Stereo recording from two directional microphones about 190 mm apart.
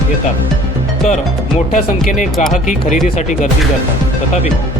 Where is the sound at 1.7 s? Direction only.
40° left (ahead or behind).